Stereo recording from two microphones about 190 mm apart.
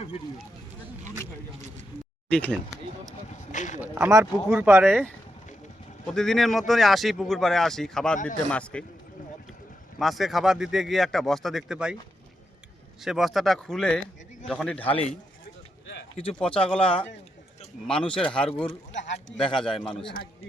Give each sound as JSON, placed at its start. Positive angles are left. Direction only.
{"t": 2.3, "sound": "speech", "side_deg": 5}
{"t": 3.2, "sound": "a sound", "side_deg": 40}
{"t": 3.8, "sound": "a sound", "side_deg": -5}
{"t": 4.1, "sound": "speech", "side_deg": -15}
{"t": 6.1, "sound": "speech", "side_deg": 0}
{"t": 10.0, "sound": "speech", "side_deg": 0}
{"t": 13.0, "sound": "speech", "side_deg": 0}
{"t": 16.1, "sound": "speech", "side_deg": 5}
{"t": 18.0, "sound": "speech", "side_deg": 30}
{"t": 18.3, "sound": "speech", "side_deg": 5}
{"t": 18.9, "sound": "speech", "side_deg": 70}
{"t": 19.5, "sound": "speech", "side_deg": 5}